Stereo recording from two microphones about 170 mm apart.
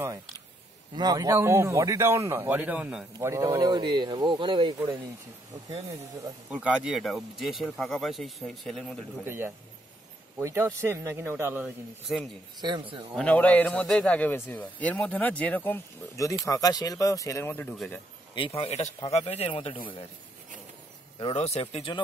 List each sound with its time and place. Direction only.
0.9 s a man's voice: 20° right (ahead or behind); by 3.1 s 5° right (ahead or behind)
3.2 s speech: 20° right (ahead or behind)
4.7 s a man's voice: 15° right (ahead or behind)
6.5 s speech: 5° right (ahead or behind)
9.2 s a man's voice: 15° right (ahead or behind)
12.1 s a man's voice: centre (ahead or behind)
18.3 s speech: 30° left (ahead or behind)
21.2 s speech: 35° left (ahead or behind)